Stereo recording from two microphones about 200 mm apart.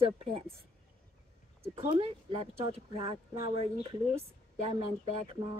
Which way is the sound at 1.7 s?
30° right (ahead or behind).